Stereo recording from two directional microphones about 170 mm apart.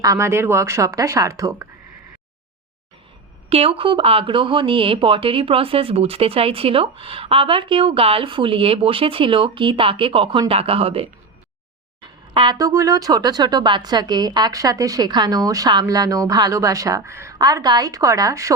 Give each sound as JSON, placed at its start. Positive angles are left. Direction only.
{"t": 0.0, "sound": "speech", "side_deg": -20}
{"t": 3.5, "sound": "speech", "side_deg": -30}